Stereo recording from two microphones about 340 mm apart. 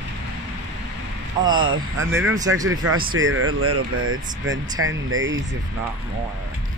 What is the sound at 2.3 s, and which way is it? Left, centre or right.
Speech, centre.